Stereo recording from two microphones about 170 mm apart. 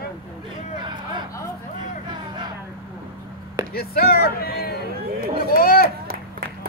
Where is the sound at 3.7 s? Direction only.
65° left (ahead or behind).